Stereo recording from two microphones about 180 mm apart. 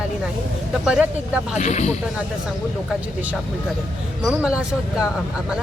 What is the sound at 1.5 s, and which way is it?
Speech, 40° left (ahead or behind).